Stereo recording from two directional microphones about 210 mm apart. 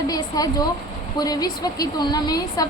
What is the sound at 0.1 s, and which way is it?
A woman's voice, 15° left (ahead or behind).